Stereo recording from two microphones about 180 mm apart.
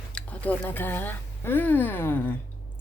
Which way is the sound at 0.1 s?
5° left (ahead or behind).